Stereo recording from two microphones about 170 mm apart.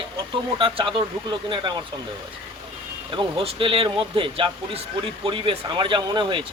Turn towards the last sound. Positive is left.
turn(degrees=-30)  # may be behind; listen again after turning